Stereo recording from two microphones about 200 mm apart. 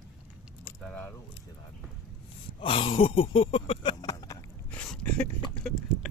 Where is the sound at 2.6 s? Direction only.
25° left (ahead or behind).